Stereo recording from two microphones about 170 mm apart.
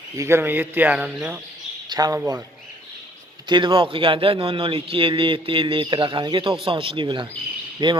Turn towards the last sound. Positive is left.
turn(degrees=-30)  # may be behind; listen again after turning